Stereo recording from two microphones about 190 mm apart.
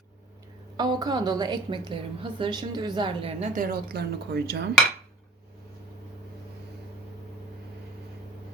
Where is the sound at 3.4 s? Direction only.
45° right (ahead or behind); by 4.7 s 60° right (ahead or behind).